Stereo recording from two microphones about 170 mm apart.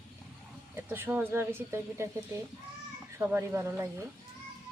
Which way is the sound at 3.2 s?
15° right (ahead or behind).